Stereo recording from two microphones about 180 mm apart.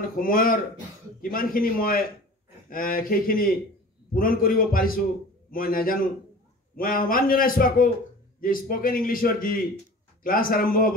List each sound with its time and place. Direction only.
0.2 s a man's voice: 50° left (ahead or behind)